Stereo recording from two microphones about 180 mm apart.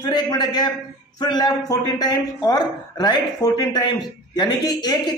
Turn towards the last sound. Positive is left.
turn(degrees=20)  # may be behind; listen again after turning